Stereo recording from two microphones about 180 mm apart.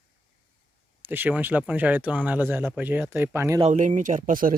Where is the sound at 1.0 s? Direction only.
10° right (ahead or behind).